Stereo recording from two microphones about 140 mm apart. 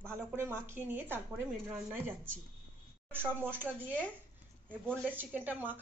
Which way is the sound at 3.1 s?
15° right (ahead or behind).